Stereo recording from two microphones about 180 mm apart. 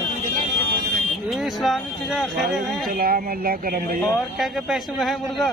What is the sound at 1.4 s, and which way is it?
A man's voice, centre (ahead or behind).